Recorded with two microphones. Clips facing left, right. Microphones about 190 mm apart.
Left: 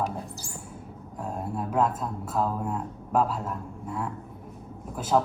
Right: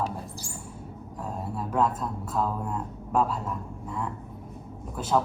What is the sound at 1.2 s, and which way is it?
Speech, 10° left (ahead or behind).